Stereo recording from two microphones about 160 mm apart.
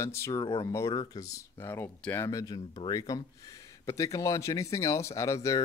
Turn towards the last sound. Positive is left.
turn(degrees=20)  # may be behind; listen again after turning